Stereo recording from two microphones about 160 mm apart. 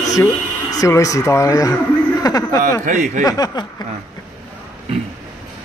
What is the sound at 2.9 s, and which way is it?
Speech, 50° right (ahead or behind).